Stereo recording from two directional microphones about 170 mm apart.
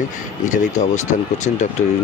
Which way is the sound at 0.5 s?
45° left (ahead or behind).